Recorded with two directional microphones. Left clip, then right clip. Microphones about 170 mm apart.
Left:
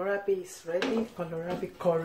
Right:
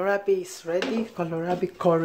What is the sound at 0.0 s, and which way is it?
Speech, 70° right (ahead or behind).